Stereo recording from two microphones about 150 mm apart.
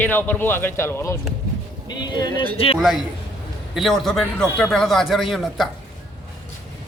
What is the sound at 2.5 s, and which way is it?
Speech, 40° left (ahead or behind).